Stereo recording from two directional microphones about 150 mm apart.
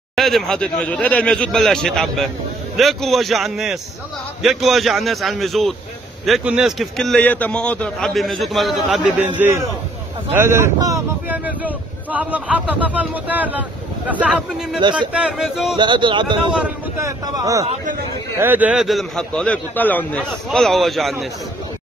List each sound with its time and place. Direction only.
0.1 s a man's voice: centre (ahead or behind)
10.3 s a man's voice: 15° right (ahead or behind)
15.7 s speech: 30° right (ahead or behind)
17.0 s a man's voice: 20° right (ahead or behind); by 21.3 s centre (ahead or behind)